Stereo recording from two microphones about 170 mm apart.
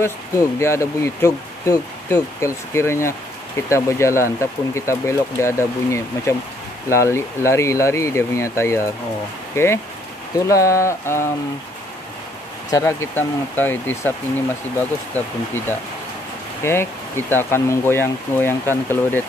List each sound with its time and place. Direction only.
0.6 s speech: 15° left (ahead or behind)
12.7 s speech: 15° left (ahead or behind)